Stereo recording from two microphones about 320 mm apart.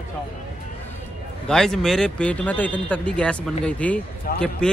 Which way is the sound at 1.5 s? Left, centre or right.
Centre.